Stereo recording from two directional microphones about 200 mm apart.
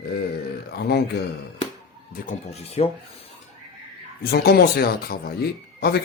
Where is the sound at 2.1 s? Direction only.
35° left (ahead or behind).